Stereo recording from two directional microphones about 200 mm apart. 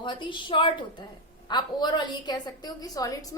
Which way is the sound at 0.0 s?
25° left (ahead or behind).